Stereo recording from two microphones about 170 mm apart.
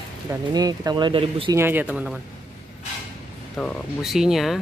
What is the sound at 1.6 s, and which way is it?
Speech, 10° right (ahead or behind).